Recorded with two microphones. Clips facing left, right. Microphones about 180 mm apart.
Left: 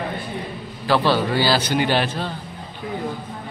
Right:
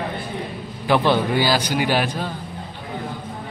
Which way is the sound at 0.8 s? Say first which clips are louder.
Right 1 dB; 15° right (ahead or behind).